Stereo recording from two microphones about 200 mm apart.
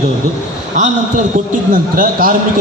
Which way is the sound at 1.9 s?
45° right (ahead or behind).